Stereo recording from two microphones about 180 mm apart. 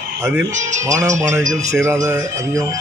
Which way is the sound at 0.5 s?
40° right (ahead or behind).